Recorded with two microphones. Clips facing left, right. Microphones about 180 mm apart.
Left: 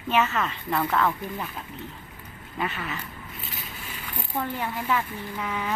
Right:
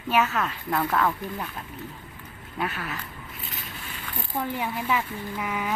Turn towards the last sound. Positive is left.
turn(degrees=-5)  # may be behind; listen again after turning